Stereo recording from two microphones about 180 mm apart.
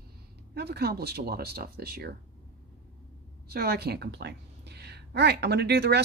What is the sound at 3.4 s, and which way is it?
A woman's voice, 60° right (ahead or behind).